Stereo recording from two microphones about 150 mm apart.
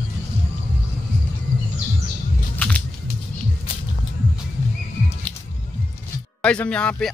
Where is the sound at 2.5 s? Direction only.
10° left (ahead or behind).